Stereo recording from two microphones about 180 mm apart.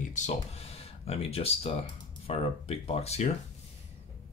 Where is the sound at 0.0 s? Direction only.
40° left (ahead or behind).